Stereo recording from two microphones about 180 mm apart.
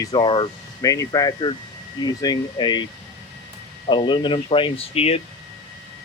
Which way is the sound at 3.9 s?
25° left (ahead or behind).